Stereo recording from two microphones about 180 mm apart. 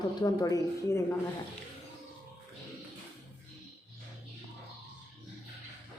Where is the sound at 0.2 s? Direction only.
20° left (ahead or behind).